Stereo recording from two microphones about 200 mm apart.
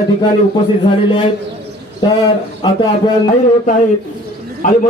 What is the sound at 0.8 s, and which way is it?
Speech, 25° left (ahead or behind).